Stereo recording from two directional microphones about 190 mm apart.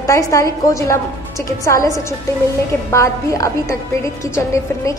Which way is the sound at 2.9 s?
15° left (ahead or behind).